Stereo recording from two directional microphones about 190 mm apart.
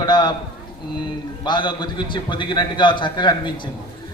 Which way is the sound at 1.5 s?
25° left (ahead or behind).